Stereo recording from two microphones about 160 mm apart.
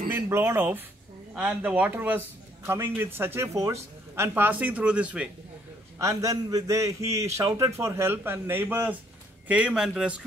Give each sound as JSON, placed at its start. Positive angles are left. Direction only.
{"t": 0.1, "sound": "a man's voice", "side_deg": -15}
{"t": 5.9, "sound": "a man's voice", "side_deg": -20}